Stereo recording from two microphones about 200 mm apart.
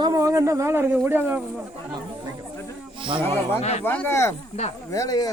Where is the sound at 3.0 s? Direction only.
25° right (ahead or behind).